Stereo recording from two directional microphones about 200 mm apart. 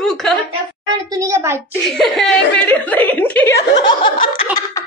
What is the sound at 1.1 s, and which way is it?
Speech, 15° right (ahead or behind).